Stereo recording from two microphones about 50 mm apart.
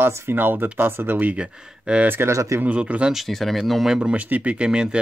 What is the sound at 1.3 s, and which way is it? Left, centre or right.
Speech, right.